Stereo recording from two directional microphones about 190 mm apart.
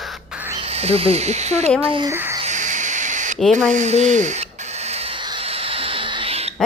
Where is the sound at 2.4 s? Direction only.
40° right (ahead or behind).